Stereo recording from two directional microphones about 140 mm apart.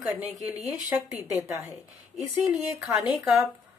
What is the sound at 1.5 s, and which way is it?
Speech, 20° right (ahead or behind).